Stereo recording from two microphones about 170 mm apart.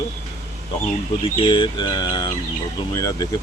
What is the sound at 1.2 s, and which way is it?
Speech, 30° left (ahead or behind).